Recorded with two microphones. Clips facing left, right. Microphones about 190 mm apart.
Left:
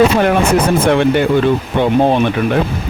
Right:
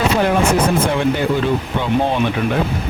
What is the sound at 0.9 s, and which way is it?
Speech, 65° left (ahead or behind).